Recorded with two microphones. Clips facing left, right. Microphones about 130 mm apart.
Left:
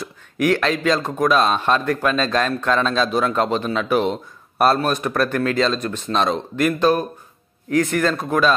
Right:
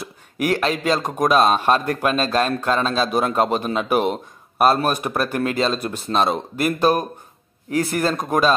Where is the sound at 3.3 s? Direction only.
10° right (ahead or behind).